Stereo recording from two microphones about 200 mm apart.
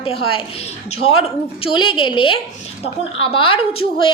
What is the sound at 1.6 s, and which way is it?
A woman's voice, 25° left (ahead or behind).